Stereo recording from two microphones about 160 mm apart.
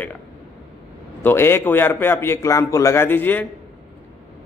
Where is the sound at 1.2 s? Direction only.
15° left (ahead or behind).